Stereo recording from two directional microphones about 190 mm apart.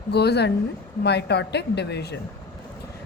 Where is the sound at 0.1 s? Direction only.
60° left (ahead or behind).